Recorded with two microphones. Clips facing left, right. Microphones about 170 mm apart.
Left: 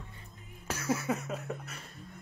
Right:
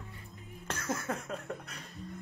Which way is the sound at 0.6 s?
10° left (ahead or behind).